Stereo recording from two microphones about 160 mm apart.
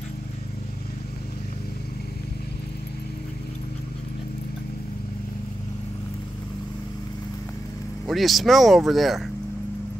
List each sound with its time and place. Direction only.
8.1 s speech: centre (ahead or behind)